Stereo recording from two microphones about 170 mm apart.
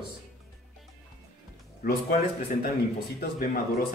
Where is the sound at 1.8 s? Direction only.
60° left (ahead or behind).